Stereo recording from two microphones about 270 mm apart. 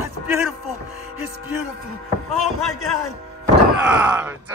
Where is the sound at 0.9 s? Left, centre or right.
Right.